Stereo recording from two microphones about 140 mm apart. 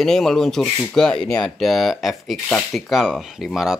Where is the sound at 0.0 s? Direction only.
5° left (ahead or behind).